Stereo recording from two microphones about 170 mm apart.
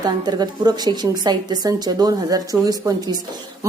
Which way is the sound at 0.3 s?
25° right (ahead or behind).